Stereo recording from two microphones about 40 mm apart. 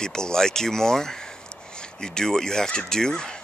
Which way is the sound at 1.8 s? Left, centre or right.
Centre.